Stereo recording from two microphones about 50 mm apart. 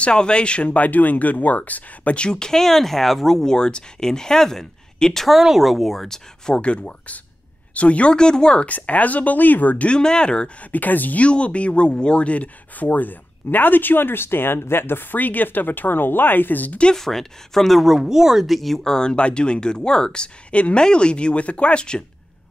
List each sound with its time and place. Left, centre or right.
0.0 s speech: centre
0.7 s speech: left; by 5.2 s centre
5.2 s speech: centre
6.6 s speech: left
8.6 s speech: left
9.8 s speech: centre
10.7 s speech: left
16.9 s speech: centre
18.9 s speech: centre